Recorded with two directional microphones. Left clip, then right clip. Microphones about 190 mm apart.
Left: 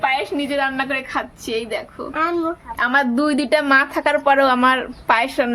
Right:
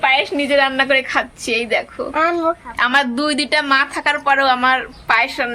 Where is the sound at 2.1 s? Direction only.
40° right (ahead or behind).